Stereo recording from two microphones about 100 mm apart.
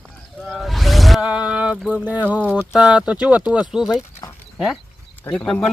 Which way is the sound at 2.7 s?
10° right (ahead or behind).